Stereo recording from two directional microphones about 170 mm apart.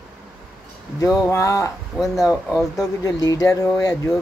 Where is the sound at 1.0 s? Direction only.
20° left (ahead or behind).